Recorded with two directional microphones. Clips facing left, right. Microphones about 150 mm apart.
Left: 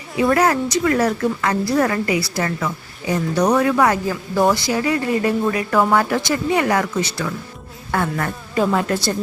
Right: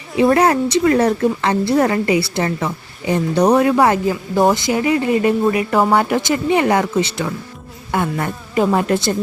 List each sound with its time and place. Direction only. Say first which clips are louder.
0.2 s a woman's voice: right 3 dB; 30° right (ahead or behind)